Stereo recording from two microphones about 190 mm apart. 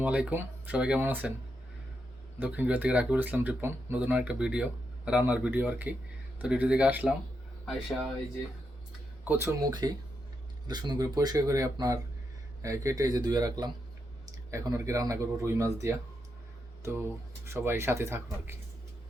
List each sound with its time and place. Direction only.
0.0 s speech: 5° right (ahead or behind)
2.4 s speech: 10° right (ahead or behind)
9.2 s speech: 10° right (ahead or behind)